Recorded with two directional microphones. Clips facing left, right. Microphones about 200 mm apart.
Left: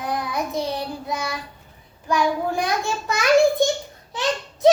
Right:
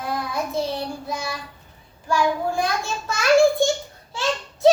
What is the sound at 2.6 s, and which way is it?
A child's voice, 20° left (ahead or behind).